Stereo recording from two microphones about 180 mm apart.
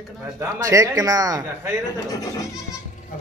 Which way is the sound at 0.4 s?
15° right (ahead or behind).